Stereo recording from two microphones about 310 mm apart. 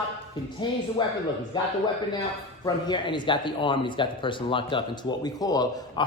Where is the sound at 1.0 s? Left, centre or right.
Centre.